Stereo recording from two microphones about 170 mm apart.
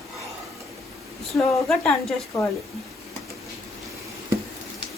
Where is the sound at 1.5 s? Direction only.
Centre (ahead or behind).